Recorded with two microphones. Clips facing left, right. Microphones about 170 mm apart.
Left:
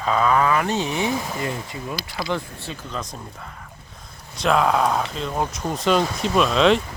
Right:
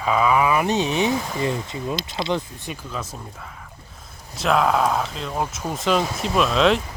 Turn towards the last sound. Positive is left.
turn(degrees=0)  # may be behind; listen again after turning